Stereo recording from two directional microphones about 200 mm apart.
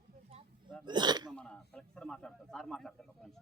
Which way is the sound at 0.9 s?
20° right (ahead or behind).